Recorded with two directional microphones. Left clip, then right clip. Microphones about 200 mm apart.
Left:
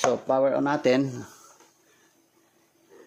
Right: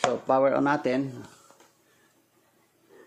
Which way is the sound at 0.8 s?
25° left (ahead or behind).